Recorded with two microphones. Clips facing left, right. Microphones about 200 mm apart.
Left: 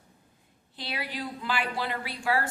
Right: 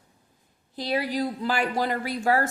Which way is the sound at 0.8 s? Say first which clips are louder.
Right 10 dB; 40° right (ahead or behind).